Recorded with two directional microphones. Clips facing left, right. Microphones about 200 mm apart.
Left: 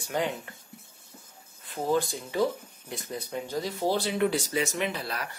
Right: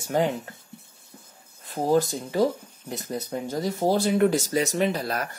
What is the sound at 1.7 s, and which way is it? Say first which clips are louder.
Speech: right 5 dB; 40° right (ahead or behind).